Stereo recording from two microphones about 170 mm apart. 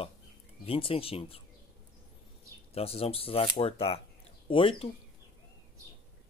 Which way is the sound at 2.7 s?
35° left (ahead or behind).